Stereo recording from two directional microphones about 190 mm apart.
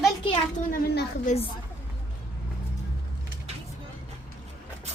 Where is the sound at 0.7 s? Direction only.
45° left (ahead or behind).